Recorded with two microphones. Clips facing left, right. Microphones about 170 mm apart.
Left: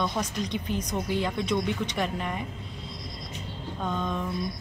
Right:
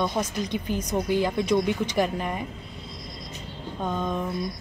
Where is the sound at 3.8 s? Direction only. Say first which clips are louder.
Right 2 dB; 10° right (ahead or behind).